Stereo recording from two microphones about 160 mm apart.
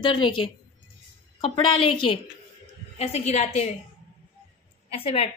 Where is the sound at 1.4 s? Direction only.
35° left (ahead or behind).